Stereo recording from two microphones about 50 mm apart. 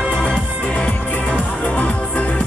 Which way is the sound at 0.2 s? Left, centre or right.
Left.